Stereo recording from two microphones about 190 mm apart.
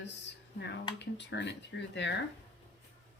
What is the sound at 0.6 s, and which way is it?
Speech, 65° left (ahead or behind).